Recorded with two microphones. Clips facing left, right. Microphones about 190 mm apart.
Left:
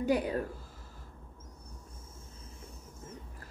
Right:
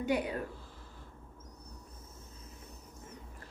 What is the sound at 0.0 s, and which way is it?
Speech, 35° left (ahead or behind).